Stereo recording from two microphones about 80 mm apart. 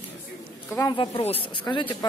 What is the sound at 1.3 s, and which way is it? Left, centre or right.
Speech, left.